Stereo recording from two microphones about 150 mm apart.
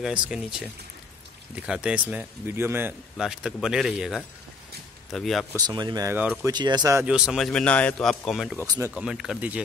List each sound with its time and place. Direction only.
0.0 s speech: 5° right (ahead or behind)
3.2 s speech: 5° right (ahead or behind)
5.7 s speech: 25° right (ahead or behind)
7.1 s speech: 5° right (ahead or behind)
8.5 s speech: 15° right (ahead or behind)
9.0 s speech: 5° right (ahead or behind)